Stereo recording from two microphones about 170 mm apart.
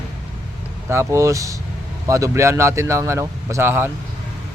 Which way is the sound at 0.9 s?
15° right (ahead or behind).